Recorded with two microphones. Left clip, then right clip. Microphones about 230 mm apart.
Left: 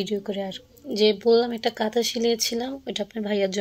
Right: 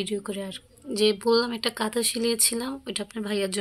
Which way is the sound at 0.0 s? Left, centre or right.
Centre.